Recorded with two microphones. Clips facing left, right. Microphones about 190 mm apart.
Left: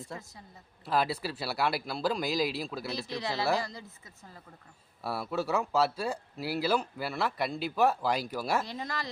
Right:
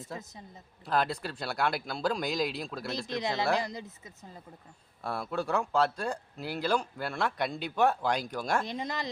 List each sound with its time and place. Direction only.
0.9 s speech: 5° left (ahead or behind)
3.2 s speech: 20° right (ahead or behind)
5.0 s speech: 5° left (ahead or behind)
8.6 s speech: 20° right (ahead or behind)